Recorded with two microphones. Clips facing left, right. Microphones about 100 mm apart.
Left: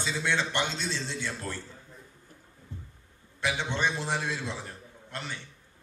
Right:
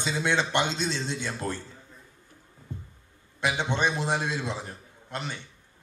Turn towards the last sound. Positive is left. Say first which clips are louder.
# right 3 dB
turn(degrees=-20)  # may be behind; listen again after turning